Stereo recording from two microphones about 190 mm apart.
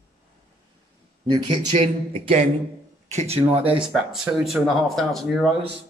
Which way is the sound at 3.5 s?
5° right (ahead or behind).